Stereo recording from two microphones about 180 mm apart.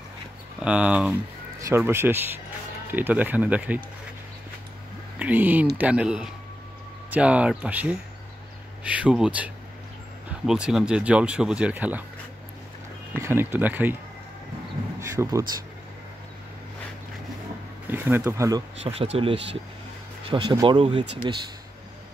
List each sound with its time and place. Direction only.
0.6 s speech: 5° right (ahead or behind)
5.2 s speech: 10° right (ahead or behind)
13.1 s speech: 15° right (ahead or behind)
15.0 s speech: 15° right (ahead or behind)
17.9 s speech: 10° right (ahead or behind)
18.9 s speech: 35° right (ahead or behind)